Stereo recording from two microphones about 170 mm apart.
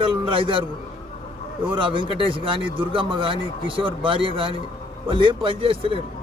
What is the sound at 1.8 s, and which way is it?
A man's voice, 30° right (ahead or behind).